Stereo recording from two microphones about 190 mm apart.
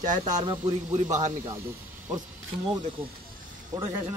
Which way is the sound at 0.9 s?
40° right (ahead or behind).